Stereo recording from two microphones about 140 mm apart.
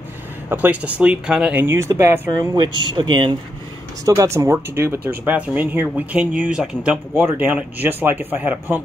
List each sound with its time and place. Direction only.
0.5 s speech: 10° right (ahead or behind); by 3.3 s 35° right (ahead or behind)
4.0 s speech: 25° right (ahead or behind)